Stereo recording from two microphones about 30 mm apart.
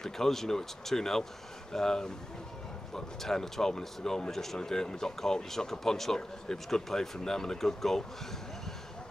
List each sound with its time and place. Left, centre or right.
0.0 s speech: centre
4.3 s speech: centre
4.6 s speech: left